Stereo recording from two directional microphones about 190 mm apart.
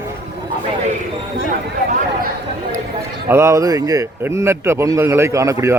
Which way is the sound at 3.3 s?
15° right (ahead or behind).